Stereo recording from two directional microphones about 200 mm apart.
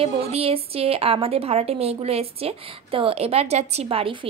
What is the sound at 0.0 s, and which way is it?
A woman's voice, 30° right (ahead or behind).